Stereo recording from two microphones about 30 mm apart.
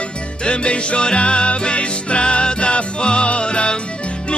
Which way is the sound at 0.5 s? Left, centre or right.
Left.